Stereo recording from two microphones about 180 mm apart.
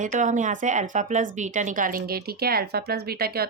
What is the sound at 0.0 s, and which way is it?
Speech, 45° right (ahead or behind).